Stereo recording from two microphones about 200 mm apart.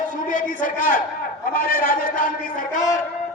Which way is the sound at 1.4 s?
45° left (ahead or behind).